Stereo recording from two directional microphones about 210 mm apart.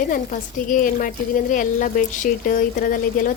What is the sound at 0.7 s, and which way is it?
A woman's voice, 40° left (ahead or behind).